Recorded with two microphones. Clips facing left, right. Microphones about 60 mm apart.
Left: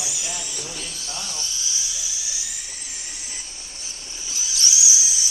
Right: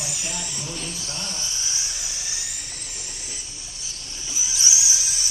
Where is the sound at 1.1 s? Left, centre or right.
Right.